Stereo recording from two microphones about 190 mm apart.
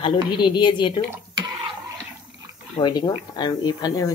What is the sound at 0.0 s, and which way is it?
Speech, 25° left (ahead or behind).